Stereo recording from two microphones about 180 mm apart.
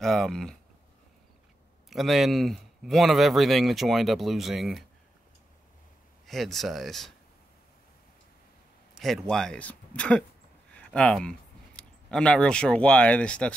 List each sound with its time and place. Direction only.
0.0 s speech: centre (ahead or behind)
1.9 s speech: centre (ahead or behind)
6.2 s speech: centre (ahead or behind)
8.9 s a sound: centre (ahead or behind)
9.3 s speech: 5° left (ahead or behind)